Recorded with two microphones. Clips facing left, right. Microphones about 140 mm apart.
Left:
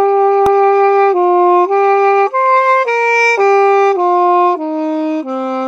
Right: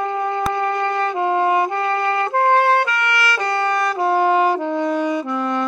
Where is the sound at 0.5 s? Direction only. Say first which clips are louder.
Left 12 dB; 35° left (ahead or behind).